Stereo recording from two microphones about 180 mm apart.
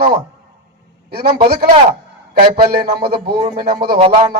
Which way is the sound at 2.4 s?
55° right (ahead or behind).